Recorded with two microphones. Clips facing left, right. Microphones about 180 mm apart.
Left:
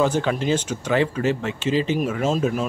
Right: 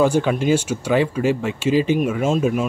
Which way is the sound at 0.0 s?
10° right (ahead or behind).